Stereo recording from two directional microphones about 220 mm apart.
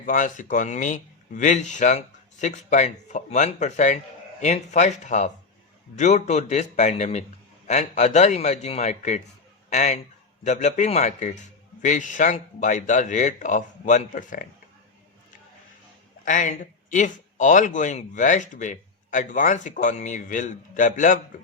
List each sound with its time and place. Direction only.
0.0 s speech: 35° left (ahead or behind)
16.2 s speech: 35° left (ahead or behind)